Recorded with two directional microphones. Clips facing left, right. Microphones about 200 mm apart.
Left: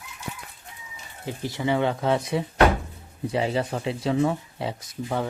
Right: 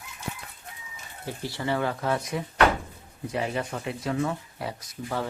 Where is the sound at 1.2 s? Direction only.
20° left (ahead or behind).